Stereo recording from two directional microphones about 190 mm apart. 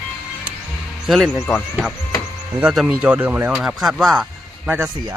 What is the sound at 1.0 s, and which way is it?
Speech, centre (ahead or behind).